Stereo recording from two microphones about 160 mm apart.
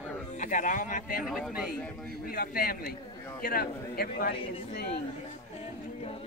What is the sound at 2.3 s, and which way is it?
A man's voice, 65° left (ahead or behind).